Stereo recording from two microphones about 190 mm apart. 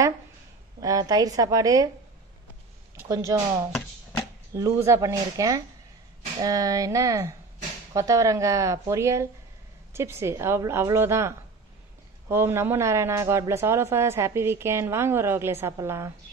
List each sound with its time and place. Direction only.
0.7 s a woman's voice: 20° right (ahead or behind)
3.0 s speech: 15° right (ahead or behind)